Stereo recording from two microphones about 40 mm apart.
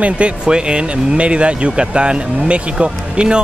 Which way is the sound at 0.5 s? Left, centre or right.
Right.